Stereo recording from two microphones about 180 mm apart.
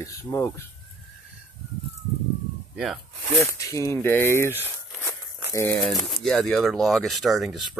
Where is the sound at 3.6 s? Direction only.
15° left (ahead or behind).